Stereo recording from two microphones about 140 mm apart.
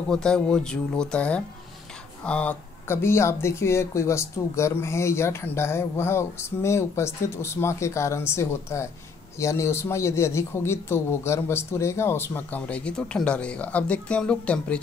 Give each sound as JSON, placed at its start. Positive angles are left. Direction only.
{"t": 0.1, "sound": "a man's voice", "side_deg": 5}